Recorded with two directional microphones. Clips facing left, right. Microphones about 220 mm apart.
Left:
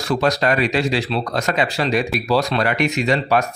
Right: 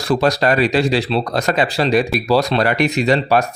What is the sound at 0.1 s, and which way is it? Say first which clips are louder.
Speech: right 3 dB; 35° right (ahead or behind).